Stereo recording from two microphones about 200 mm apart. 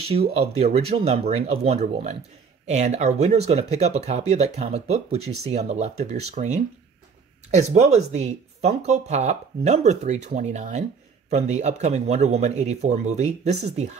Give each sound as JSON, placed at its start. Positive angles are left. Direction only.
{"t": 0.6, "sound": "speech", "side_deg": -30}